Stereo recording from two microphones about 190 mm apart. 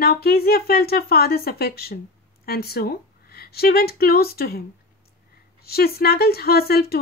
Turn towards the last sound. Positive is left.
turn(degrees=55)  # may be behind; listen again after turning